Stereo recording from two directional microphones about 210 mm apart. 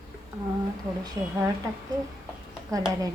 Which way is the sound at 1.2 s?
15° right (ahead or behind).